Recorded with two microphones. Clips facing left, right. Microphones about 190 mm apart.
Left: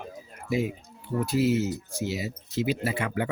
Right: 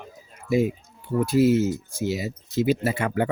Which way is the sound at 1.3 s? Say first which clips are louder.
Right 5 dB; 50° right (ahead or behind).